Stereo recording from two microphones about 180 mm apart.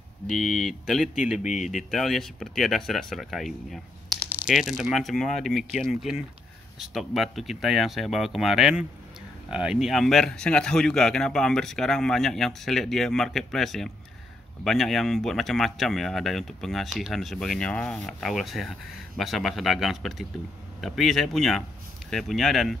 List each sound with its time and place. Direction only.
0.3 s speech: centre (ahead or behind)
1.4 s speech: 40° left (ahead or behind)
1.7 s speech: centre (ahead or behind)